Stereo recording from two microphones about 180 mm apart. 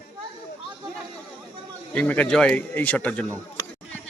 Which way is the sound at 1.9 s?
5° left (ahead or behind).